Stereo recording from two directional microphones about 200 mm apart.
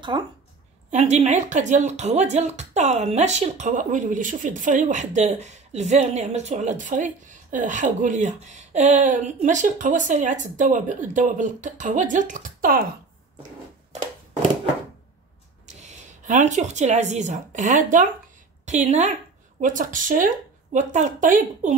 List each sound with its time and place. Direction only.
0.1 s speech: 20° right (ahead or behind)
0.8 s speech: 35° right (ahead or behind)
15.6 s a woman's voice: 35° right (ahead or behind)